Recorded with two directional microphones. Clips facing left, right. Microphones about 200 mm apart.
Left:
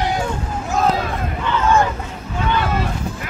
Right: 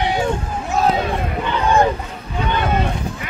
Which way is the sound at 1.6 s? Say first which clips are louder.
Right 1 dB; 35° right (ahead or behind).